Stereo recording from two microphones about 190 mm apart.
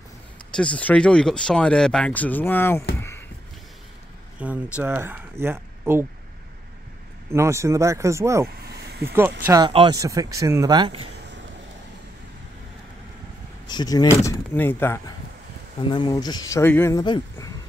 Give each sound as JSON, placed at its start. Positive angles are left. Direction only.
{"t": 0.6, "sound": "speech", "side_deg": 5}
{"t": 3.0, "sound": "a sound", "side_deg": 10}
{"t": 4.4, "sound": "speech", "side_deg": -5}
{"t": 7.2, "sound": "speech", "side_deg": -15}
{"t": 9.5, "sound": "speech", "side_deg": -25}
{"t": 13.7, "sound": "speech", "side_deg": 20}
{"t": 15.9, "sound": "speech", "side_deg": 25}
{"t": 17.0, "sound": "speech", "side_deg": 25}